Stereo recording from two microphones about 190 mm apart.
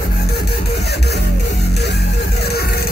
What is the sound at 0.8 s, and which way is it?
Music, 60° left (ahead or behind).